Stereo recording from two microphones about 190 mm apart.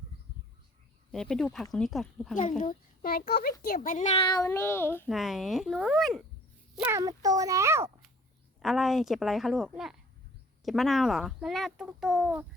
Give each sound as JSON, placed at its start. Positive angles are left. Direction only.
{"t": 1.1, "sound": "a child's voice", "side_deg": 0}
{"t": 2.3, "sound": "a child's voice", "side_deg": 40}
{"t": 4.3, "sound": "a child's voice", "side_deg": 15}
{"t": 5.0, "sound": "a child's voice", "side_deg": 0}
{"t": 6.7, "sound": "speech", "side_deg": -10}
{"t": 8.6, "sound": "a child's voice", "side_deg": 0}